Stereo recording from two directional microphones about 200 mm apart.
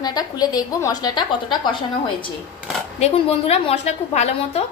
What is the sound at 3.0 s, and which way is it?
A woman's voice, 30° left (ahead or behind).